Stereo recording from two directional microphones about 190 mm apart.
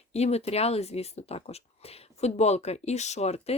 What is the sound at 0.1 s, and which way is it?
Speech, 35° left (ahead or behind).